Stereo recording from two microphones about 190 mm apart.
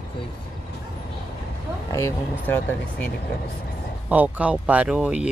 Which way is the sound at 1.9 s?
15° left (ahead or behind).